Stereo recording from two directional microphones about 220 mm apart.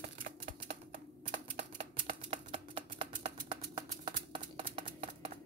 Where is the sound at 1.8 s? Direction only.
25° right (ahead or behind).